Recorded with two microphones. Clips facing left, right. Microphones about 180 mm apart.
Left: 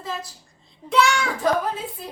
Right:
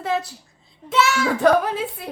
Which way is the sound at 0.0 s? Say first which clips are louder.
Right 8 dB; 65° right (ahead or behind).